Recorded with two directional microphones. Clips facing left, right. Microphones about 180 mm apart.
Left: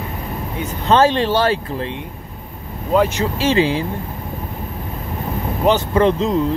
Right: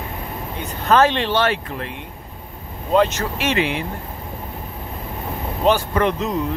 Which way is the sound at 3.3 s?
30° left (ahead or behind).